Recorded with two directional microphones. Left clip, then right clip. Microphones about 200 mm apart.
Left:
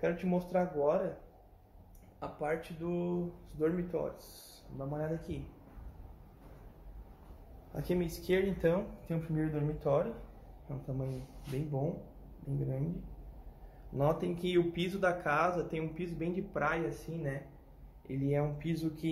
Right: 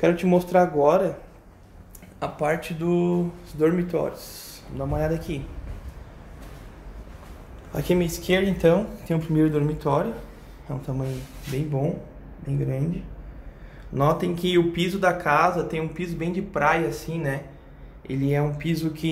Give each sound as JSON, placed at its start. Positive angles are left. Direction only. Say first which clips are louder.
{"t": 0.0, "sound": "speech", "louder": "right 13 dB", "side_deg": -30}
{"t": 2.1, "sound": "speech", "louder": "right 11 dB", "side_deg": -15}
{"t": 3.5, "sound": "speech", "louder": "right 11 dB", "side_deg": -5}
{"t": 7.7, "sound": "speech", "louder": "right 12 dB", "side_deg": -10}
{"t": 13.9, "sound": "speech", "louder": "right 10 dB", "side_deg": -5}